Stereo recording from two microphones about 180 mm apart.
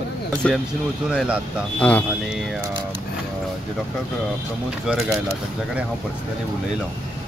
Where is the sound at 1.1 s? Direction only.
5° right (ahead or behind).